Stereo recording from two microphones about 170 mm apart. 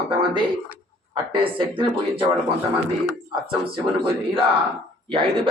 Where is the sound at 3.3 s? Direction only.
30° right (ahead or behind).